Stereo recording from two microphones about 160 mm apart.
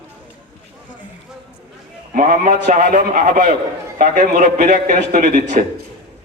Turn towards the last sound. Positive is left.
turn(degrees=-50)  # may be behind; listen again after turning